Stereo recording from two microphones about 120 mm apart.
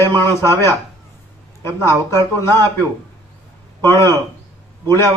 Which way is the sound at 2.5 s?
30° right (ahead or behind).